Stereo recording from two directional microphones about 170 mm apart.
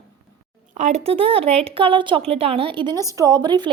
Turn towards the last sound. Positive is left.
turn(degrees=-25)  # may be behind; listen again after turning